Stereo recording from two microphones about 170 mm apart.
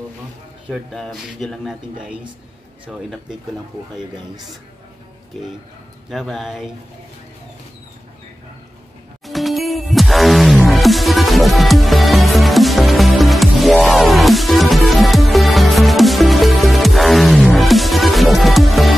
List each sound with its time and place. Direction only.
0.7 s speech: centre (ahead or behind)
6.0 s speech: centre (ahead or behind)
9.2 s music: centre (ahead or behind)